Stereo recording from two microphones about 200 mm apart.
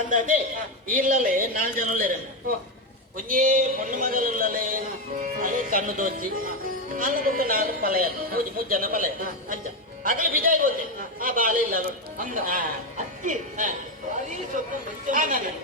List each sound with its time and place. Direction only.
0.9 s speech: 45° right (ahead or behind)
3.2 s speech: 40° right (ahead or behind)